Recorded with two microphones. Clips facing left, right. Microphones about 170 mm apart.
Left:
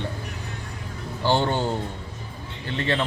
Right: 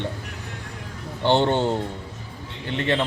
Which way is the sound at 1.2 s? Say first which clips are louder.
Right 3 dB; 25° right (ahead or behind).